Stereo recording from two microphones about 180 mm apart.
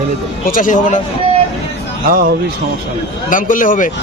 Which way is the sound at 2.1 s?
55° right (ahead or behind).